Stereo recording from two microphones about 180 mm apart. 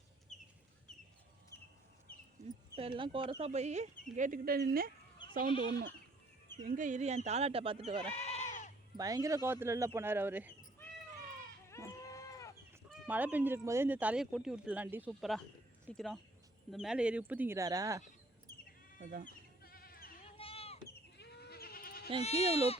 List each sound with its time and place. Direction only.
2.4 s speech: 30° right (ahead or behind); by 4.9 s 55° right (ahead or behind)
6.7 s speech: 45° right (ahead or behind); by 8.1 s 30° right (ahead or behind)
8.1 s goat: 40° left (ahead or behind)
9.0 s speech: 20° right (ahead or behind)
11.7 s livestock: 15° left (ahead or behind)
13.1 s speech: 10° right (ahead or behind)
18.5 s bleat: 55° left (ahead or behind)
19.6 s sheep: 55° left (ahead or behind)
20.2 s sheep: 30° left (ahead or behind)
20.7 s goat: 65° left (ahead or behind)
22.2 s speech: 35° left (ahead or behind)